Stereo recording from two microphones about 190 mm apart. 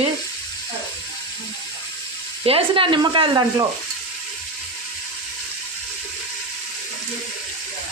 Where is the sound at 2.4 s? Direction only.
30° right (ahead or behind).